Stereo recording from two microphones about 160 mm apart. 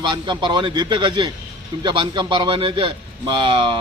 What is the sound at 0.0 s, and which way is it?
Speech, 30° right (ahead or behind).